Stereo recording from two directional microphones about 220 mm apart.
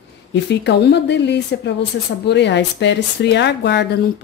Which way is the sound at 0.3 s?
50° left (ahead or behind).